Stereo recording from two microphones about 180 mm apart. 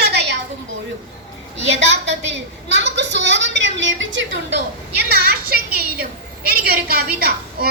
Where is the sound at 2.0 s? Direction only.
75° right (ahead or behind).